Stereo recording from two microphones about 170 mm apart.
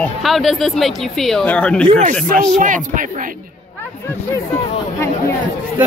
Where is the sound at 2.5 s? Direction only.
50° right (ahead or behind).